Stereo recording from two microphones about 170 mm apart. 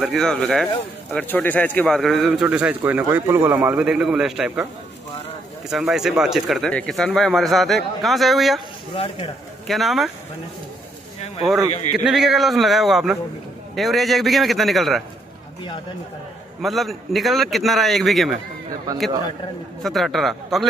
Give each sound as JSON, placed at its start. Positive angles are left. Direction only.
{"t": 0.0, "sound": "speech", "side_deg": 0}
{"t": 5.7, "sound": "speech", "side_deg": 0}
{"t": 8.9, "sound": "speech", "side_deg": 35}
{"t": 9.7, "sound": "speech", "side_deg": 0}
{"t": 12.0, "sound": "speech", "side_deg": 0}
{"t": 16.6, "sound": "speech", "side_deg": 0}
{"t": 19.8, "sound": "speech", "side_deg": 0}